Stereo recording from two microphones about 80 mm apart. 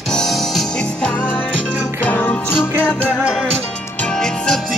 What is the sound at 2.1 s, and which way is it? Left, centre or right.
Music, left.